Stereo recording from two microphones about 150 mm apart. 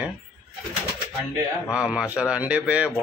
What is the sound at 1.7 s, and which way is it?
Speech, 5° right (ahead or behind).